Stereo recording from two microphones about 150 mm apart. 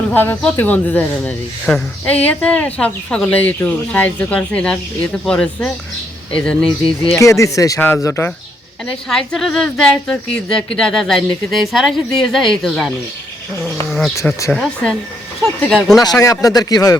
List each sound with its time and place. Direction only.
0.1 s speech: 10° left (ahead or behind)
7.2 s speech: 20° left (ahead or behind)
8.9 s speech: 5° left (ahead or behind)
14.5 s speech: centre (ahead or behind)
16.0 s speech: 20° left (ahead or behind)